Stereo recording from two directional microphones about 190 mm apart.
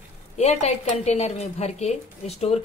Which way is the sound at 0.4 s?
35° left (ahead or behind).